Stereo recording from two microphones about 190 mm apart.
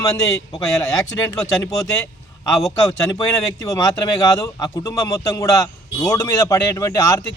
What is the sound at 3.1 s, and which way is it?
A man's voice, 20° left (ahead or behind).